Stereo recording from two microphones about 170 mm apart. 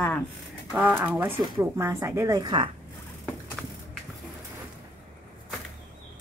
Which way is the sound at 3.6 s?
5° right (ahead or behind).